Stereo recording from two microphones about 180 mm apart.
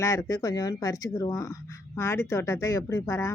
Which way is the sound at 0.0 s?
15° left (ahead or behind).